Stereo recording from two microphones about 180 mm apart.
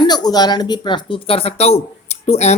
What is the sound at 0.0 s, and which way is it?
A man's voice, 20° left (ahead or behind).